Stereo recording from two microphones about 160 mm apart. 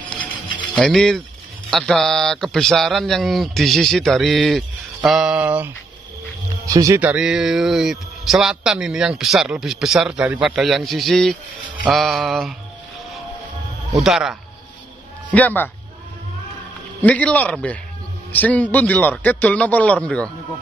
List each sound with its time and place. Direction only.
0.7 s speech: 5° left (ahead or behind)
6.6 s speech: 20° right (ahead or behind)
7.0 s speech: 5° right (ahead or behind)
14.0 s speech: centre (ahead or behind)
15.3 s a man's voice: 10° left (ahead or behind)
17.0 s a man's voice: 10° left (ahead or behind)